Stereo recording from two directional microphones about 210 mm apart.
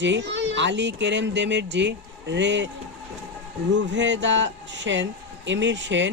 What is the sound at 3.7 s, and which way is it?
Speech, 60° right (ahead or behind).